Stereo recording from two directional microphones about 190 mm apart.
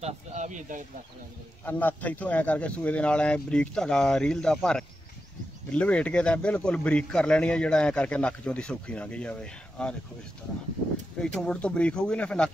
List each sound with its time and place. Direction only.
0.0 s speech: 40° right (ahead or behind)
1.6 s a man's voice: 10° left (ahead or behind)
11.1 s a man's voice: 5° left (ahead or behind)